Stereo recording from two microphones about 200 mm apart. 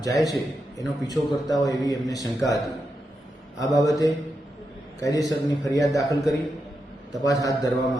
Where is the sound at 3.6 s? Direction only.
15° left (ahead or behind).